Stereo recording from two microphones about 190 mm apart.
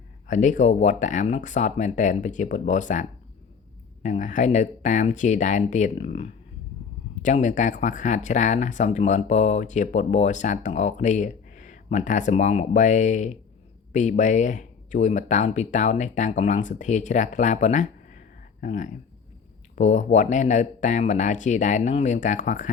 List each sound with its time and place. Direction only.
0.3 s speech: 40° left (ahead or behind)